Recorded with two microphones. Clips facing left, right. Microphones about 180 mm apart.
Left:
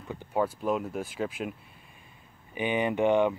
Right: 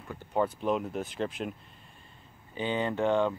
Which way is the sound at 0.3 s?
5° left (ahead or behind).